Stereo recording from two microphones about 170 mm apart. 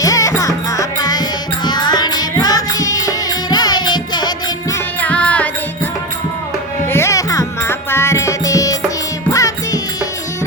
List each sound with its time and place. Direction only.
0.0 s music: 20° left (ahead or behind)
4.9 s music: 10° left (ahead or behind)
6.8 s music: 15° left (ahead or behind)